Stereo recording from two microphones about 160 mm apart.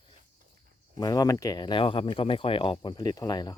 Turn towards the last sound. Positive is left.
turn(degrees=25)  # may be behind; listen again after turning